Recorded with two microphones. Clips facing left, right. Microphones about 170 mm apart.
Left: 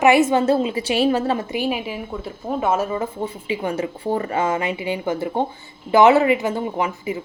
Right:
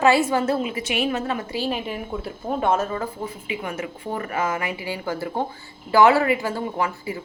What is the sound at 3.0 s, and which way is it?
Speech, 30° left (ahead or behind).